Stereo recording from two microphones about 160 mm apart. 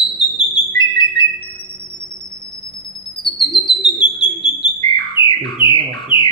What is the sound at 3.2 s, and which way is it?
Bird, 30° left (ahead or behind).